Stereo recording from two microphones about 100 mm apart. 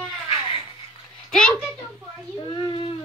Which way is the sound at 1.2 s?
10° left (ahead or behind).